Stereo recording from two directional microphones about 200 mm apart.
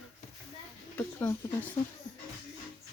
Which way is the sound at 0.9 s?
10° left (ahead or behind).